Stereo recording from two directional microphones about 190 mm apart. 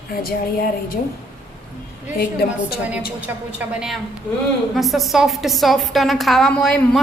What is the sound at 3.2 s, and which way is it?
A woman's voice, 10° right (ahead or behind).